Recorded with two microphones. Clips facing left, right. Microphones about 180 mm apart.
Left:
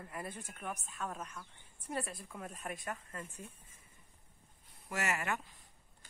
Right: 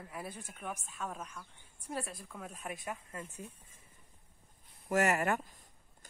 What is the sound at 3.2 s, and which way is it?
Speech, 15° right (ahead or behind).